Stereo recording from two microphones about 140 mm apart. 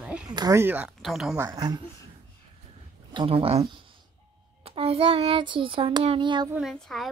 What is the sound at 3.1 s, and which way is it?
Child singing, 35° right (ahead or behind).